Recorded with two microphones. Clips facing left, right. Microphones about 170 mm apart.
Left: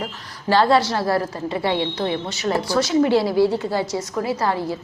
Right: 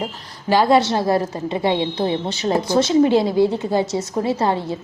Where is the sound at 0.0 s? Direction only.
15° right (ahead or behind).